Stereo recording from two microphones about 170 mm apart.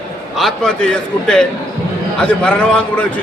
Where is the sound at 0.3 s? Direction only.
Centre (ahead or behind).